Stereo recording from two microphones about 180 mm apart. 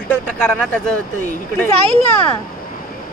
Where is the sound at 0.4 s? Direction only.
5° left (ahead or behind).